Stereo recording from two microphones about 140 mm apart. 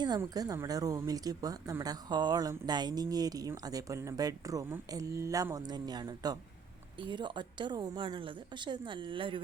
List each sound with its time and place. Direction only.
0.2 s a woman's voice: 25° right (ahead or behind)